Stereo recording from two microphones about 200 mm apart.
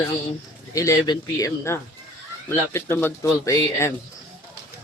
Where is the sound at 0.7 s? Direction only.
15° left (ahead or behind).